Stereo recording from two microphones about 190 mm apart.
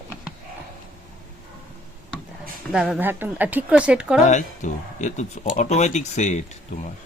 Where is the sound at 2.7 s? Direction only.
5° right (ahead or behind).